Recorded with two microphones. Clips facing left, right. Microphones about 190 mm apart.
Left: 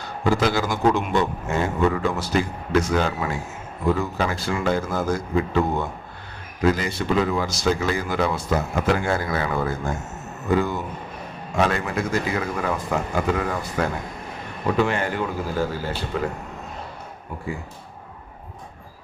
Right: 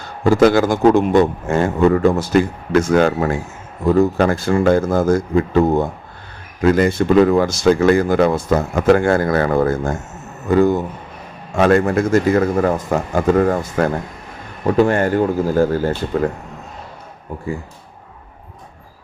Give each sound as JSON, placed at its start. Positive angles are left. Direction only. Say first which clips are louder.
{"t": 0.3, "sound": "speech", "louder": "right 9 dB", "side_deg": -50}
{"t": 6.6, "sound": "speech", "louder": "right 8 dB", "side_deg": -55}